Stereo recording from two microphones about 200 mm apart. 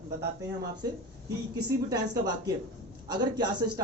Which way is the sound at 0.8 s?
20° right (ahead or behind).